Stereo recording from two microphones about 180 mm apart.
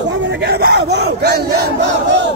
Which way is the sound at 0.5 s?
65° right (ahead or behind).